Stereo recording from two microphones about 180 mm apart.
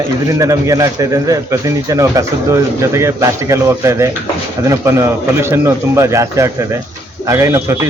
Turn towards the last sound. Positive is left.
turn(degrees=-15)  # may be behind; listen again after turning